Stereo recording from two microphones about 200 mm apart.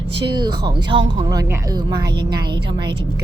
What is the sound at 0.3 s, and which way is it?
Speech, 20° right (ahead or behind).